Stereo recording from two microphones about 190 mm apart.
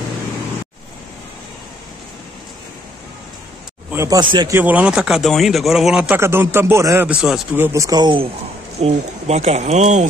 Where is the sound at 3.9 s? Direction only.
15° right (ahead or behind).